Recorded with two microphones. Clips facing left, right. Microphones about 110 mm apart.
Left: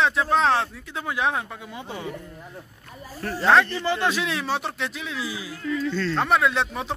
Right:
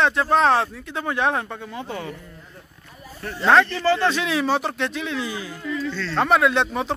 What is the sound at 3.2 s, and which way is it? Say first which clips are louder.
Speech: left 2 dB; 40° left (ahead or behind).